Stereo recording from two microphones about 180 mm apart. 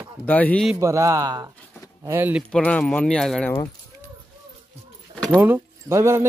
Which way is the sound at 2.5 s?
5° left (ahead or behind).